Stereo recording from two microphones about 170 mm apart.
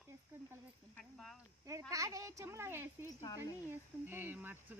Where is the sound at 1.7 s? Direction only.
20° right (ahead or behind).